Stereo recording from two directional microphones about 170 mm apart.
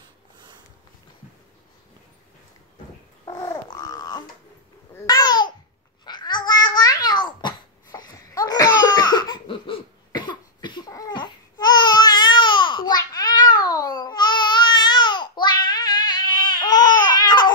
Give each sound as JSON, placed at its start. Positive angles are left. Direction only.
{"t": 3.3, "sound": "babbling", "side_deg": 20}